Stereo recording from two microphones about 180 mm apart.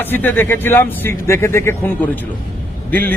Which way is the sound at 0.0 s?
10° left (ahead or behind).